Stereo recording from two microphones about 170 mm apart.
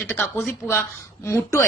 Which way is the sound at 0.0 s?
15° left (ahead or behind).